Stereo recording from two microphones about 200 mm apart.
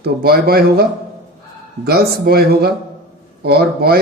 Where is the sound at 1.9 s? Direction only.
50° right (ahead or behind).